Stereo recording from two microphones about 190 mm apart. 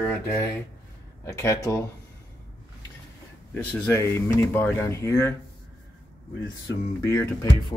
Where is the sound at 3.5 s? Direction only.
10° left (ahead or behind).